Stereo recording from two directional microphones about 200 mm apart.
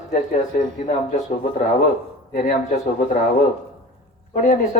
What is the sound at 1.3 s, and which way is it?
Speech, 40° left (ahead or behind).